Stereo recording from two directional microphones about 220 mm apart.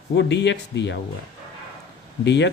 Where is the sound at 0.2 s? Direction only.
50° left (ahead or behind).